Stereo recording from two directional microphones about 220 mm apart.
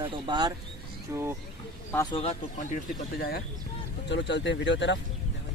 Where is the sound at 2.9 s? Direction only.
45° left (ahead or behind).